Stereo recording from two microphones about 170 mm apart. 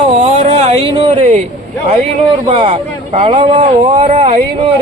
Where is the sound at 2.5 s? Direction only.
35° right (ahead or behind).